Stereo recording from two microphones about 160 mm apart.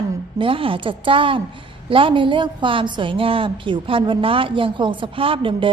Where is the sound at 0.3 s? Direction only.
35° right (ahead or behind).